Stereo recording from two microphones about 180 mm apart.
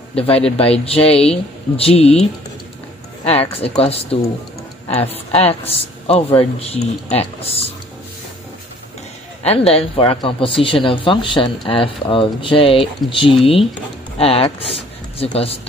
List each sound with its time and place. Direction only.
0.1 s a man's voice: 30° left (ahead or behind)
3.3 s speech: 35° left (ahead or behind)
9.4 s speech: 35° left (ahead or behind)